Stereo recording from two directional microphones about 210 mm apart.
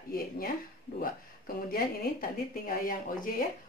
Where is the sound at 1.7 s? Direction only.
45° left (ahead or behind).